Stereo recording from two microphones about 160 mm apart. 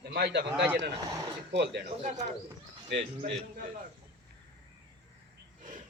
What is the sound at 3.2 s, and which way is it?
Speech, 60° right (ahead or behind).